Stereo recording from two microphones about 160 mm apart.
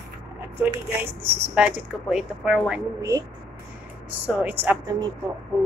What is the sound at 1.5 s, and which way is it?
Speech, 5° right (ahead or behind).